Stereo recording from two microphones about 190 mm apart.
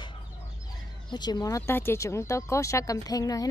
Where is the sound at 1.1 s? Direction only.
20° left (ahead or behind).